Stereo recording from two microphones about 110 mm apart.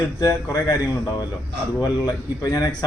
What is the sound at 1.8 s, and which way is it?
Speech, 35° left (ahead or behind).